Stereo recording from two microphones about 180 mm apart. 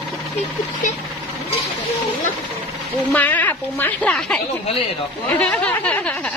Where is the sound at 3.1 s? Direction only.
10° left (ahead or behind).